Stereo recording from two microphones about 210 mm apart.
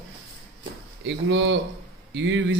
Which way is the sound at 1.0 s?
60° right (ahead or behind).